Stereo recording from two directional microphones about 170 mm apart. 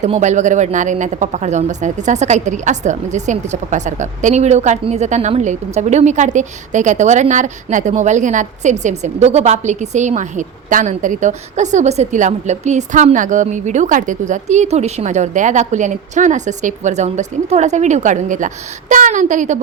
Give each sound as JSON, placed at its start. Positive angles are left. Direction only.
{"t": 0.0, "sound": "speech", "side_deg": -45}